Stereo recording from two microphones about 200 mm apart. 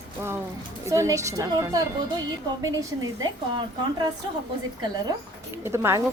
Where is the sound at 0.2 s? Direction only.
15° right (ahead or behind).